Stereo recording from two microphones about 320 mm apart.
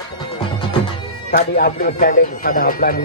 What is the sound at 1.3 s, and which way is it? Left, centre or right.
Speech, left.